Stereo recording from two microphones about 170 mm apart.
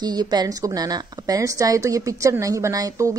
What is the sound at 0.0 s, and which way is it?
A woman's voice, 25° right (ahead or behind).